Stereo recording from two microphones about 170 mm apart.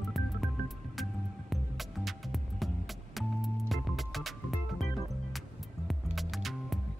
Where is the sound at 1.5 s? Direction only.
Centre (ahead or behind).